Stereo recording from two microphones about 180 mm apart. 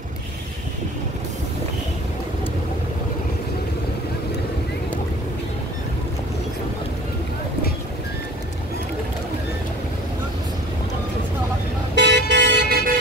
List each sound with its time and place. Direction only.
11.9 s vehicle: 75° right (ahead or behind)